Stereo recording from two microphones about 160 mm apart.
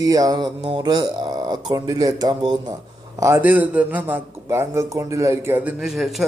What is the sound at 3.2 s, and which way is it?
A man's voice, 15° right (ahead or behind).